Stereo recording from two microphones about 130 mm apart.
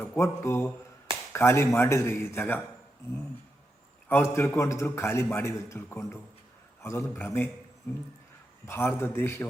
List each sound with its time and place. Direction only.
0.2 s a man's voice: 20° left (ahead or behind)
4.1 s a man's voice: 20° left (ahead or behind)
8.6 s a man's voice: 20° left (ahead or behind)